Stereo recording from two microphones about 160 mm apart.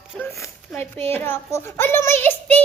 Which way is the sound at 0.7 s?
Centre (ahead or behind).